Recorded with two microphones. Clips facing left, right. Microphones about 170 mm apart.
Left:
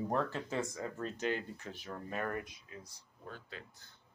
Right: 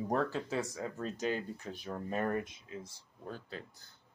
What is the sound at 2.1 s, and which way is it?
Speech, 25° right (ahead or behind).